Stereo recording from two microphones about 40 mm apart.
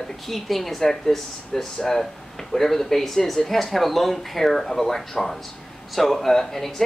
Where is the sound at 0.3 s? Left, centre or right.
Centre.